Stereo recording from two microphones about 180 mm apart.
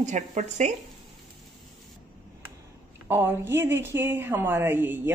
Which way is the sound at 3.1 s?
10° right (ahead or behind).